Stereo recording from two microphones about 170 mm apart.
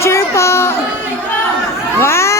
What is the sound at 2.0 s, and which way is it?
Vehicle, 15° left (ahead or behind).